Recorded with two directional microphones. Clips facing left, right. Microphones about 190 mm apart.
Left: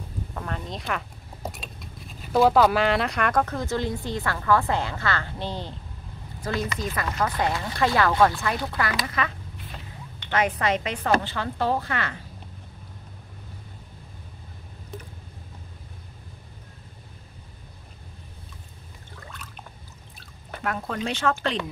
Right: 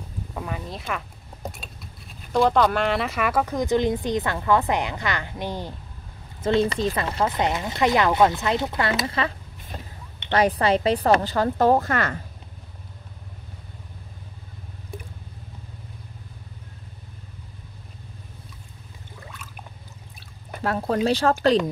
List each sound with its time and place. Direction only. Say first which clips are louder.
0.3 s speech: right 2 dB; 10° right (ahead or behind)
2.2 s speech: left 1 dB; 5° left (ahead or behind); by 5.8 s 10° right (ahead or behind)
6.4 s speech: right 8 dB; 30° right (ahead or behind)
10.3 s a woman's voice: right 4 dB; 35° right (ahead or behind)
20.6 s a woman's voice: right 7 dB; 35° right (ahead or behind)